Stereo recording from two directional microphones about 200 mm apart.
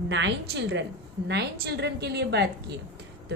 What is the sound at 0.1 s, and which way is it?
A woman's voice, 60° right (ahead or behind).